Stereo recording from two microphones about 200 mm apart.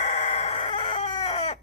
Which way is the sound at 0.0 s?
35° left (ahead or behind).